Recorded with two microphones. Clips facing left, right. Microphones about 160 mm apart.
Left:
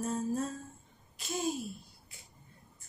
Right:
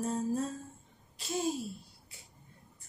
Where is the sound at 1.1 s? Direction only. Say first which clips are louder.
Right 2 dB; 30° right (ahead or behind).